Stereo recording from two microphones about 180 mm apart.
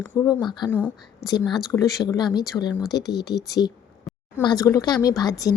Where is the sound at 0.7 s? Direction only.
10° left (ahead or behind).